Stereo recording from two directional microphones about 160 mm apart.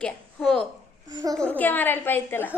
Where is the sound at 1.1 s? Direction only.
20° right (ahead or behind).